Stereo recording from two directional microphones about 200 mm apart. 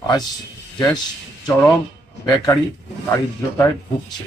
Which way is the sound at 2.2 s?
20° left (ahead or behind).